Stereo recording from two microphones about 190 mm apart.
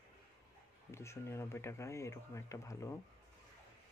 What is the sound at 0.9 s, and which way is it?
Speech, 15° left (ahead or behind).